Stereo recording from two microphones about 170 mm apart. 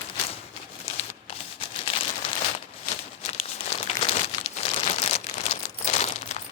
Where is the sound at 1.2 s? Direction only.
35° left (ahead or behind).